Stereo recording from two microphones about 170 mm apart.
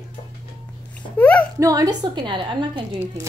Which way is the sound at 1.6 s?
20° right (ahead or behind).